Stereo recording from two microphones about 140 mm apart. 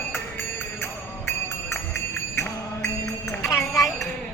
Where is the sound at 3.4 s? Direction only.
25° left (ahead or behind).